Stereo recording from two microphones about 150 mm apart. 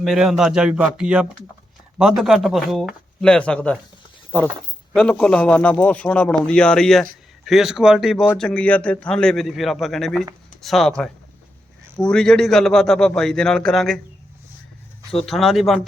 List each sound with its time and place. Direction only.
0.0 s a man's voice: 5° right (ahead or behind)
4.9 s a man's voice: 5° left (ahead or behind)
15.3 s a man's voice: centre (ahead or behind)